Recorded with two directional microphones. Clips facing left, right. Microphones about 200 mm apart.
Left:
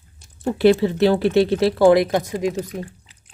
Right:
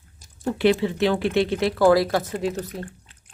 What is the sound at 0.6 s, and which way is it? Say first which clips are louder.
Speech: left 5 dB; 40° left (ahead or behind).